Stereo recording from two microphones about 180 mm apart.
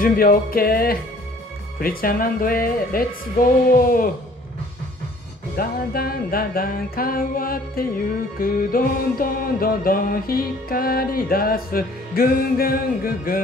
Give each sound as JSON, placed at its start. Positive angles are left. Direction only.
{"t": 0.0, "sound": "music", "side_deg": 55}
{"t": 5.6, "sound": "music", "side_deg": 55}